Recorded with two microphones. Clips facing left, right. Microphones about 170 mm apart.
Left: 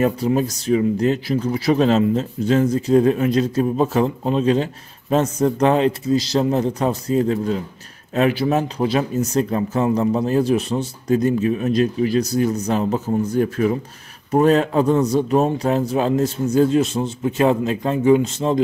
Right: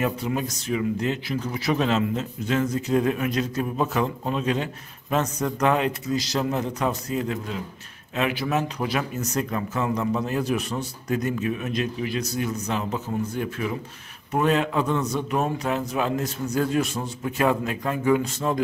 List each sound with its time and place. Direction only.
0.0 s speech: 35° left (ahead or behind)